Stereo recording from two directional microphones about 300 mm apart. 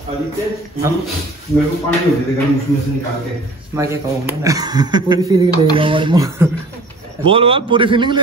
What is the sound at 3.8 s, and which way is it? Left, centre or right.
A man's voice, centre.